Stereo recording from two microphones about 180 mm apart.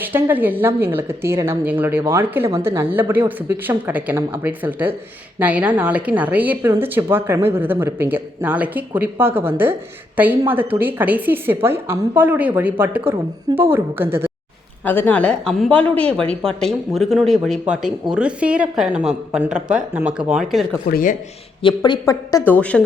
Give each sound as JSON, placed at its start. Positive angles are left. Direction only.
{"t": 0.0, "sound": "a woman's voice", "side_deg": -10}
{"t": 14.8, "sound": "a woman's voice", "side_deg": 10}
{"t": 20.8, "sound": "speech", "side_deg": 50}
{"t": 21.6, "sound": "a woman's voice", "side_deg": 25}